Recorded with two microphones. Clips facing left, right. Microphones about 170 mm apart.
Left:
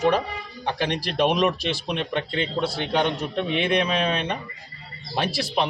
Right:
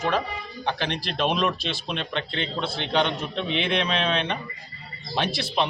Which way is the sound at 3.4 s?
45° left (ahead or behind).